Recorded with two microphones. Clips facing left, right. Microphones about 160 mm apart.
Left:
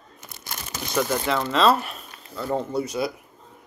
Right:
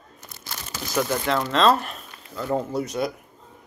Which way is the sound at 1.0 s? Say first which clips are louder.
Left 1 dB; 20° left (ahead or behind).